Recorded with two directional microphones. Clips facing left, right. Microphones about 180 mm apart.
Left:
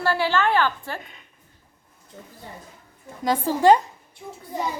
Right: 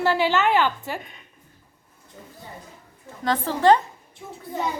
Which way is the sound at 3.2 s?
10° left (ahead or behind).